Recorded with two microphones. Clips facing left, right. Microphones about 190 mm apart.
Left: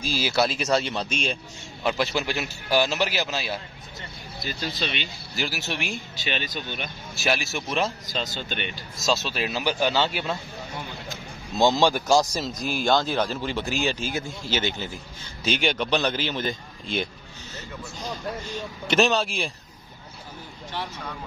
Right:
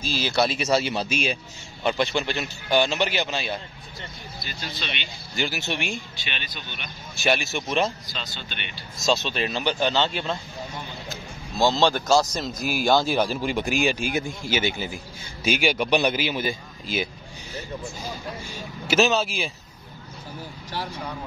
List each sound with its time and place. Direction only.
0.0 s a man's voice: 10° left (ahead or behind)
4.4 s speech: 40° left (ahead or behind)
5.3 s a man's voice: centre (ahead or behind)
6.1 s speech: 40° left (ahead or behind)
7.2 s a man's voice: centre (ahead or behind)
8.1 s speech: 45° left (ahead or behind)
8.9 s a man's voice: centre (ahead or behind)
12.4 s a man's voice: 5° right (ahead or behind)